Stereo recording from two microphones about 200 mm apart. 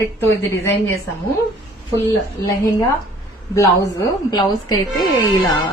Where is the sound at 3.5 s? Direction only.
15° left (ahead or behind).